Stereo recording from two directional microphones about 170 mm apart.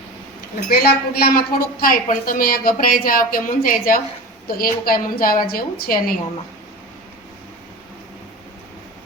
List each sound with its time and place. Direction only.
0.7 s a woman's voice: 65° left (ahead or behind)